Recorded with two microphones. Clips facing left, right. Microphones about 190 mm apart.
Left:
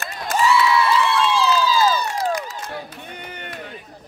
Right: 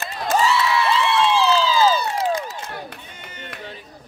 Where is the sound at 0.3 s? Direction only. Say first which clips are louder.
Left 1 dB; 40° right (ahead or behind).